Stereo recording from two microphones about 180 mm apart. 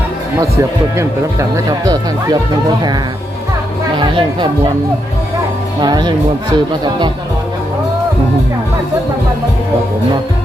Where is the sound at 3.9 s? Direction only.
25° right (ahead or behind).